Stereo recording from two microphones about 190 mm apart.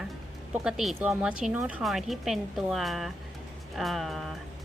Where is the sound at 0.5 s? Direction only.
5° right (ahead or behind).